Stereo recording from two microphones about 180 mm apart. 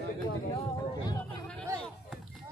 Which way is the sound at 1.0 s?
20° left (ahead or behind).